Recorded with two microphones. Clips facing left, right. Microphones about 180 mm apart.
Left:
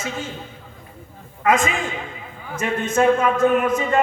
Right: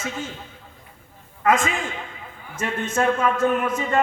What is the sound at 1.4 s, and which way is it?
A man's voice, 15° left (ahead or behind).